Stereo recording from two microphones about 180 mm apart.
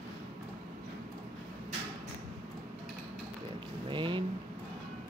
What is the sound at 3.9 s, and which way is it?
Vehicle, 30° right (ahead or behind).